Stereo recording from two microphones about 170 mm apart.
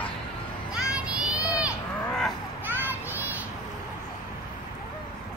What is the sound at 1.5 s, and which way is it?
Cattle, 5° right (ahead or behind).